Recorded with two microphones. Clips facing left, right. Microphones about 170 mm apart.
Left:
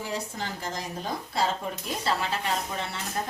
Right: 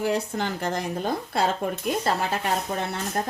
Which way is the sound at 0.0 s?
65° right (ahead or behind).